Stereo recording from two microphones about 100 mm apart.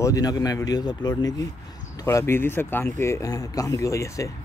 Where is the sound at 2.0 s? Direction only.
25° left (ahead or behind).